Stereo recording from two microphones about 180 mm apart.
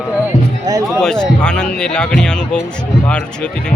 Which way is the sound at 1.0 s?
5° left (ahead or behind).